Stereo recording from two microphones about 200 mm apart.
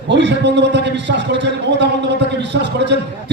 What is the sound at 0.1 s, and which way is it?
A man's voice, 60° right (ahead or behind).